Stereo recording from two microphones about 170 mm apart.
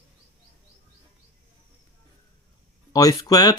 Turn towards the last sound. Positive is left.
turn(degrees=20)  # may be behind; listen again after turning